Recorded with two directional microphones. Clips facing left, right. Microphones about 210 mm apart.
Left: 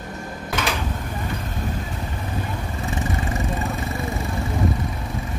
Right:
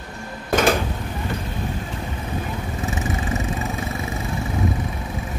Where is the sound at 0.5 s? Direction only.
45° right (ahead or behind).